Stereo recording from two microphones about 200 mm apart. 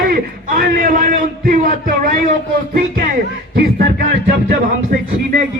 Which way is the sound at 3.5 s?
55° right (ahead or behind).